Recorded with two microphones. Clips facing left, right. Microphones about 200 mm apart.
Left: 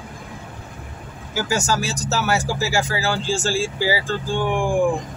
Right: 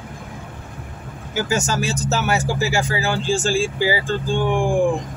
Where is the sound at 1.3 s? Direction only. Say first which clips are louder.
Even; 20° right (ahead or behind).